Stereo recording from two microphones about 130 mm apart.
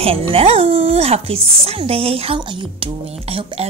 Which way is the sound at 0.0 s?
45° right (ahead or behind).